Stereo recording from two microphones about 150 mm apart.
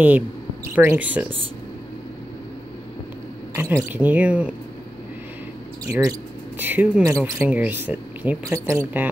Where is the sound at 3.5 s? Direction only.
15° right (ahead or behind).